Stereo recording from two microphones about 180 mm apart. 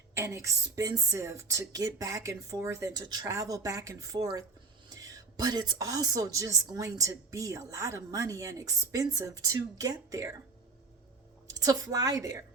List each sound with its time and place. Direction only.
0.1 s a woman's voice: 15° right (ahead or behind)
11.4 s a woman's voice: 20° right (ahead or behind)